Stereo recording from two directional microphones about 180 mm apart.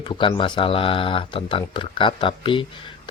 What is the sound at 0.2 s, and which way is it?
Speech, 30° left (ahead or behind).